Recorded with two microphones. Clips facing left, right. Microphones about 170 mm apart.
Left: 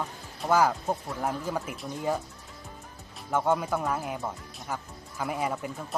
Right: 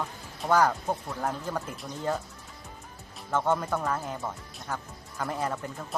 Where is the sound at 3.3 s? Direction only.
10° left (ahead or behind).